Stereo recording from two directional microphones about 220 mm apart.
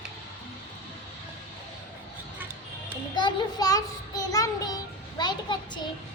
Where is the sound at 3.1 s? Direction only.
20° left (ahead or behind).